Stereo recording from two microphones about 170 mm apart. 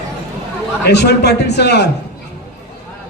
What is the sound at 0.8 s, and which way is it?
A man's voice, 75° left (ahead or behind).